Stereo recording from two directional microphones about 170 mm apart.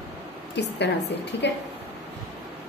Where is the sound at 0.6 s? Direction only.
90° left.